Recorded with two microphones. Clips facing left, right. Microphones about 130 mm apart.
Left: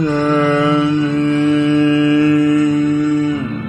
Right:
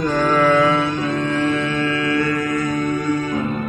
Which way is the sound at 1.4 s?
20° left (ahead or behind).